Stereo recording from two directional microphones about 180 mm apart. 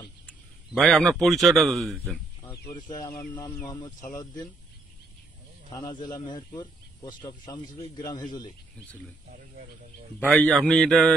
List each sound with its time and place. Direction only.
0.3 s a man's voice: centre (ahead or behind)
3.2 s speech: 20° left (ahead or behind)
5.7 s speech: 20° left (ahead or behind)
10.3 s speech: 5° left (ahead or behind)